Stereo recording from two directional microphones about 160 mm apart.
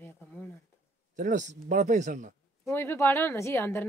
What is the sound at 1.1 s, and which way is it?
Speech, 50° right (ahead or behind).